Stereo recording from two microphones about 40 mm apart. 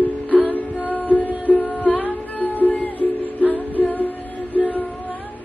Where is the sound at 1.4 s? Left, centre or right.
Left.